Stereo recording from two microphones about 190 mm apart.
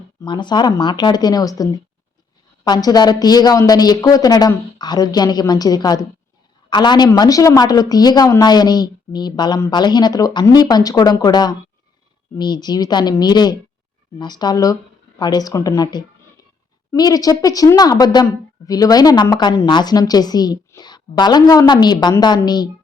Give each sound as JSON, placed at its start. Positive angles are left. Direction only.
{"t": 0.2, "sound": "a woman's voice", "side_deg": 25}